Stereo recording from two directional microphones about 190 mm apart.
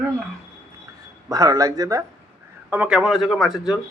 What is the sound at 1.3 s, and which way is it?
Speech, 20° right (ahead or behind).